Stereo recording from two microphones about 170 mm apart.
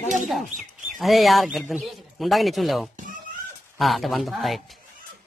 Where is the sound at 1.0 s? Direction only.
Centre (ahead or behind).